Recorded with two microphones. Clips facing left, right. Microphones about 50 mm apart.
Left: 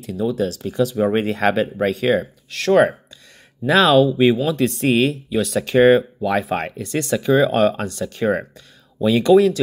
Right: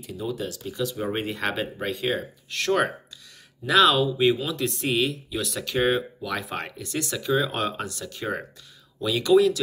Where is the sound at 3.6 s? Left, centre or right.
Left.